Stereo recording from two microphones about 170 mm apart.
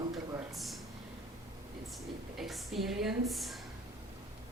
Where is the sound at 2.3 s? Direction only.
Centre (ahead or behind).